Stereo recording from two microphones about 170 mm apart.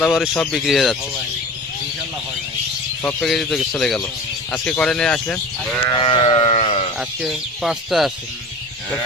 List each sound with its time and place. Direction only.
0.0 s speech: centre (ahead or behind)
3.0 s speech: 10° left (ahead or behind)
5.9 s sheep: 30° left (ahead or behind)
7.2 s speech: centre (ahead or behind)